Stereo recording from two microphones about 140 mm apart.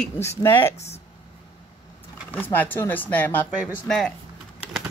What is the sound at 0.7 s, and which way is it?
Speech, 50° left (ahead or behind).